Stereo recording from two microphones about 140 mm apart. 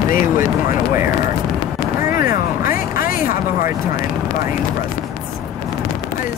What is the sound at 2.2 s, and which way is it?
Music, 90° left.